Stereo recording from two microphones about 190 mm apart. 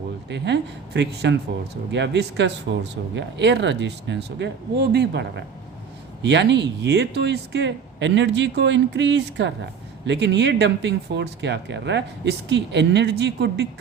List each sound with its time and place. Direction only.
0.3 s speech: 65° right (ahead or behind)
6.2 s speech: 65° right (ahead or behind)